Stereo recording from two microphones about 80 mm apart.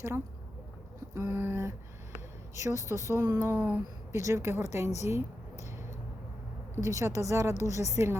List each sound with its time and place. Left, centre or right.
1.1 s a woman's voice: right
3.5 s a sound: right
4.1 s a woman's voice: right
6.7 s a woman's voice: right